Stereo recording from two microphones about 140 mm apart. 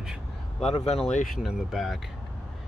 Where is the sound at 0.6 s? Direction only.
50° left (ahead or behind).